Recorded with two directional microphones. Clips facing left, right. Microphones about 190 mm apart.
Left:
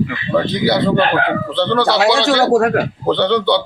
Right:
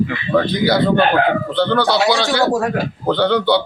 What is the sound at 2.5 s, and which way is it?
Speech, 65° left (ahead or behind).